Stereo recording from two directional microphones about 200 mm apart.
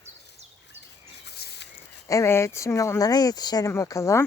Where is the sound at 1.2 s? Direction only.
55° left (ahead or behind).